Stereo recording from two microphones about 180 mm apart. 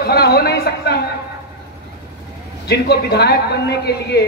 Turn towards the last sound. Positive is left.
turn(degrees=65)  # may be behind; listen again after turning